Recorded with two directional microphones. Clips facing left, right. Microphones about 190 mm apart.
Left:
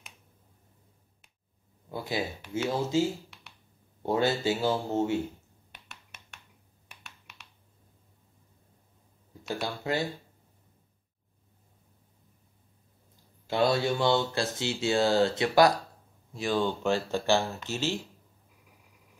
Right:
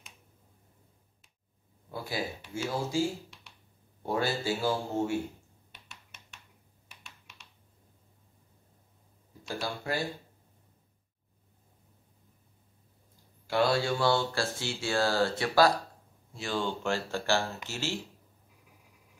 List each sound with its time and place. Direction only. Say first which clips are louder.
1.9 s speech: left 3 dB; 20° left (ahead or behind)
3.3 s a sound: left 2 dB; 60° left (ahead or behind)
4.0 s speech: left 4 dB; 20° left (ahead or behind)
5.7 s finger snapping: left 3 dB; 60° left (ahead or behind)
7.0 s computer keyboard: left 2 dB; 60° left (ahead or behind)
9.6 s speech: left 2 dB; 20° left (ahead or behind)
13.5 s speech: left 1 dB; 20° left (ahead or behind)